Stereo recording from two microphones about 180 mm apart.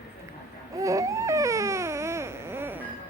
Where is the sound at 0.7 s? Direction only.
20° right (ahead or behind).